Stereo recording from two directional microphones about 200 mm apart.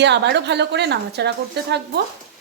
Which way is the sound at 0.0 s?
60° right (ahead or behind).